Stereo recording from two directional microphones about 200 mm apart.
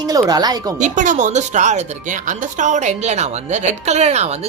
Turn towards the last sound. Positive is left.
turn(degrees=-35)  # may be behind; listen again after turning